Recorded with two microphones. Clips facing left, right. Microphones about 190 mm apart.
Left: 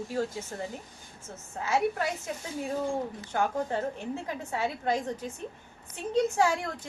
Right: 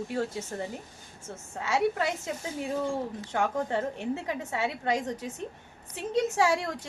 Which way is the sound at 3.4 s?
70° right (ahead or behind).